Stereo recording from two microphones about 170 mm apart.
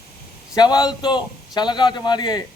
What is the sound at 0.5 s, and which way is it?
A man's voice, 25° left (ahead or behind).